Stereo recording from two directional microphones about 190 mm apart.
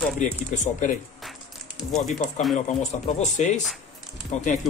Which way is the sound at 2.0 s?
40° left (ahead or behind).